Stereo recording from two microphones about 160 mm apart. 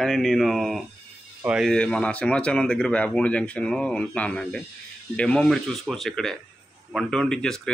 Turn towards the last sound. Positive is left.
turn(degrees=5)  # may be behind; listen again after turning